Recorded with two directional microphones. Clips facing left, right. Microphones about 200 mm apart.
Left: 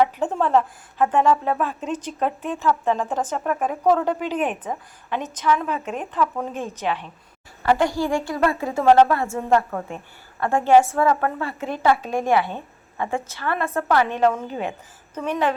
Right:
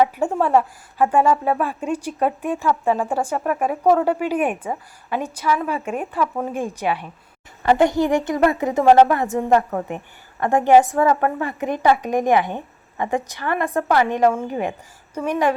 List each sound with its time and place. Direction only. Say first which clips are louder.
0.0 s a woman's voice: right 2 dB; 10° right (ahead or behind)
7.6 s a woman's voice: right 4 dB; 20° right (ahead or behind)